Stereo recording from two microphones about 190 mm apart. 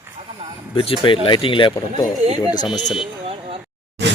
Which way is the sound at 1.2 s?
25° left (ahead or behind).